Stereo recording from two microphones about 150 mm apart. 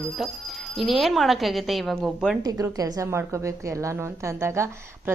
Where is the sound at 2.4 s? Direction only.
20° right (ahead or behind).